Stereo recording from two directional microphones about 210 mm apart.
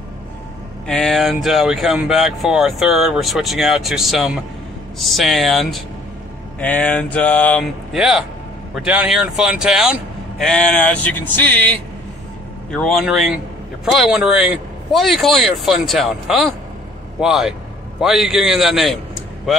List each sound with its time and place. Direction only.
0.8 s speech: 5° left (ahead or behind)